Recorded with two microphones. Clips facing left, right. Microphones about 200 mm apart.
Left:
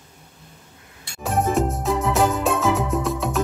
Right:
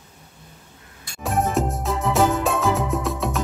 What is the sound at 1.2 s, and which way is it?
Music, centre (ahead or behind).